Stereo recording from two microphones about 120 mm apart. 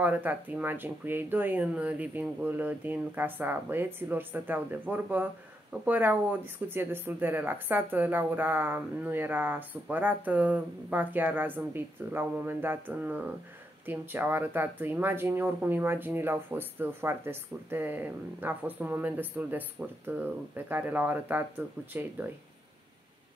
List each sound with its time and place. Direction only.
0.0 s speech: 15° right (ahead or behind)